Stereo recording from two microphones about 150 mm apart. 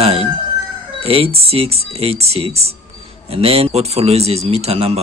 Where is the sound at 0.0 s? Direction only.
40° right (ahead or behind).